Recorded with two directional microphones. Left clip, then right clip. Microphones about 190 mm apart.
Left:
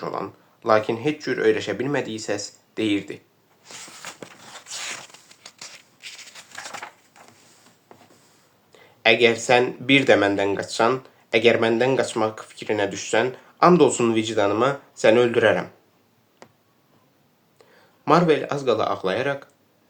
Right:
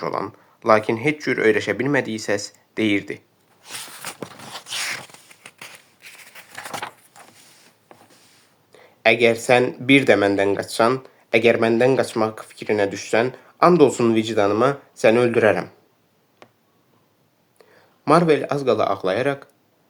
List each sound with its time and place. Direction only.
0.0 s speech: 45° right (ahead or behind)
4.0 s a sound: 35° right (ahead or behind)
8.7 s speech: 40° right (ahead or behind)
18.0 s speech: 40° right (ahead or behind)